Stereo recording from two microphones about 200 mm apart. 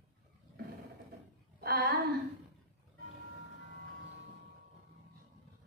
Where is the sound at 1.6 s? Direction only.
50° right (ahead or behind).